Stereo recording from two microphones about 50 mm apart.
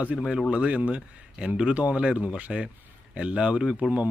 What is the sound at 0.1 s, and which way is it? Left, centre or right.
Speech, centre.